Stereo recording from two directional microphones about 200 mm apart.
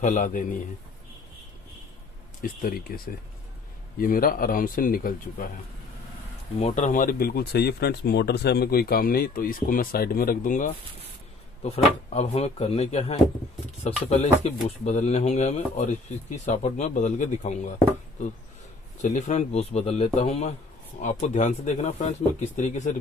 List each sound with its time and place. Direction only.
0.0 s speech: 40° left (ahead or behind)
2.4 s speech: 45° left (ahead or behind)
6.6 s speech: 40° left (ahead or behind)
18.9 s speech: 35° left (ahead or behind)